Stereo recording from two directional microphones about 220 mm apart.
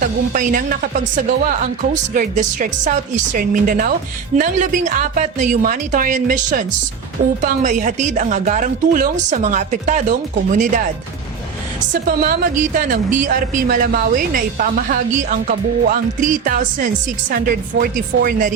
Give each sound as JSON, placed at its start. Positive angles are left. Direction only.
{"t": 0.0, "sound": "speech", "side_deg": -35}
{"t": 12.0, "sound": "speech", "side_deg": -40}